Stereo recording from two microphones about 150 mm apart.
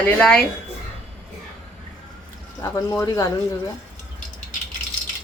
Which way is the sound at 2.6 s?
20° left (ahead or behind).